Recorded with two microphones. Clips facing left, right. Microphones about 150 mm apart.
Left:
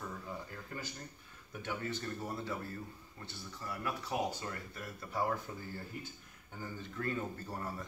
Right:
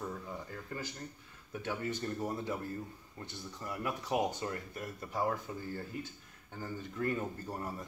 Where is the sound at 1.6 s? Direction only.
15° right (ahead or behind).